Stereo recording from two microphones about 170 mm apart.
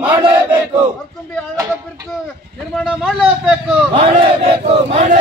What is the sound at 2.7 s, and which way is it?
A man's voice, centre (ahead or behind).